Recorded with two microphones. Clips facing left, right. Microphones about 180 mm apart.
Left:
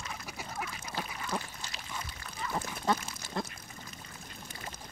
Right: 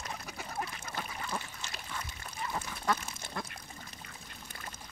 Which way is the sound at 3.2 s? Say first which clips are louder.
Left 4 dB; 55° right (ahead or behind).